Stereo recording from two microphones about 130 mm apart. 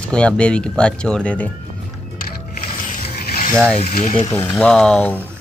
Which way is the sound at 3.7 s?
50° left (ahead or behind).